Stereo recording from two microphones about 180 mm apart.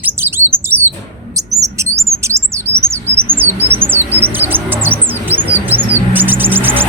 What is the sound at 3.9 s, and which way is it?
Chirp, 10° right (ahead or behind).